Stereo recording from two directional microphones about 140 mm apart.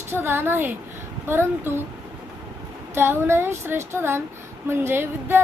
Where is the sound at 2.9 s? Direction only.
15° right (ahead or behind).